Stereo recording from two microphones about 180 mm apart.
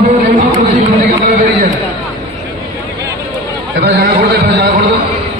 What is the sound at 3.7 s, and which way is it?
Speech, 60° right (ahead or behind).